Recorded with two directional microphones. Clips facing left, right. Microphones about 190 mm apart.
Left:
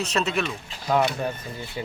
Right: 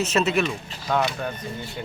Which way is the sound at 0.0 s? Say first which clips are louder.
Right 4 dB; 5° right (ahead or behind).